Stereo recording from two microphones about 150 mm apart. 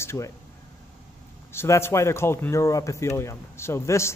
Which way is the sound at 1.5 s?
15° left (ahead or behind).